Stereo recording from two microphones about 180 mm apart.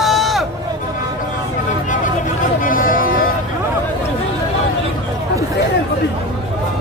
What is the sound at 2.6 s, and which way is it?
Vehicle, 50° left (ahead or behind).